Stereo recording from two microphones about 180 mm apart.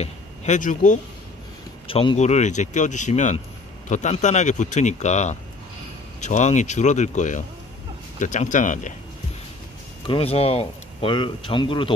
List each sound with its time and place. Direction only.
0.0 s speech: 45° left (ahead or behind)
1.9 s speech: 30° left (ahead or behind)
10.0 s speech: 30° left (ahead or behind)